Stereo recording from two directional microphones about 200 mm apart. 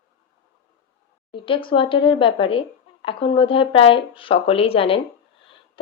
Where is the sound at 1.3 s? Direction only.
25° left (ahead or behind).